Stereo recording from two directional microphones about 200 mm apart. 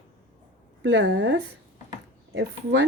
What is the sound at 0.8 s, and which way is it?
Speech, 65° right (ahead or behind).